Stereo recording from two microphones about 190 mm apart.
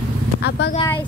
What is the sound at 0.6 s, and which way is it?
Speech, 65° left (ahead or behind).